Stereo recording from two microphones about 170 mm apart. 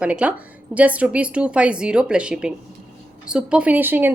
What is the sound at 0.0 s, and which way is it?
A woman's voice, 5° right (ahead or behind).